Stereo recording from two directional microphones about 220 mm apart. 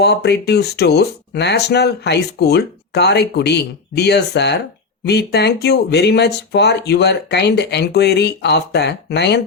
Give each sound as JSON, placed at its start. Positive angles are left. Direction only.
{"t": 0.0, "sound": "speech", "side_deg": 50}